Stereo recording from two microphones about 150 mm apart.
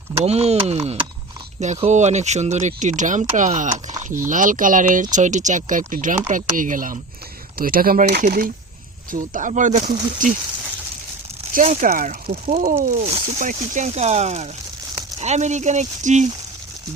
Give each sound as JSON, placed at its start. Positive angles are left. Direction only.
{"t": 0.3, "sound": "speech", "side_deg": -45}
{"t": 7.6, "sound": "speech", "side_deg": -75}
{"t": 9.1, "sound": "speech", "side_deg": -60}
{"t": 11.5, "sound": "speech", "side_deg": -55}
{"t": 12.3, "sound": "speech", "side_deg": -50}